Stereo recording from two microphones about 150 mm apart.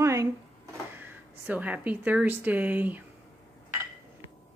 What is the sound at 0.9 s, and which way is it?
Speech, 15° right (ahead or behind).